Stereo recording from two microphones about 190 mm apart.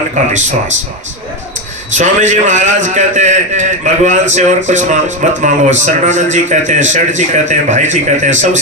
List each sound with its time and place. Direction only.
0.2 s a man's voice: 40° right (ahead or behind)
1.9 s a man's voice: 40° right (ahead or behind)